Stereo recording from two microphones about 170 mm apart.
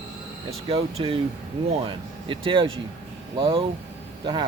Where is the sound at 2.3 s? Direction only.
30° right (ahead or behind).